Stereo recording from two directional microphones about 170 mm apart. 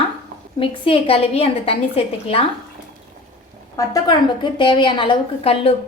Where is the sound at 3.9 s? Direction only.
25° left (ahead or behind).